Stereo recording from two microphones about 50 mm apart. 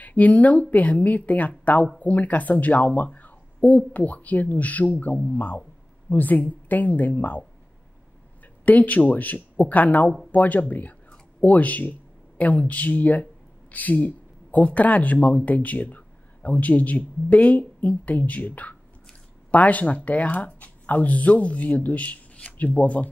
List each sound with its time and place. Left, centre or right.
0.0 s speech: left
8.6 s speech: left